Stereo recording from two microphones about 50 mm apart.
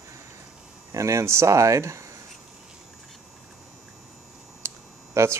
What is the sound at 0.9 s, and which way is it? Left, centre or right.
Speech, right.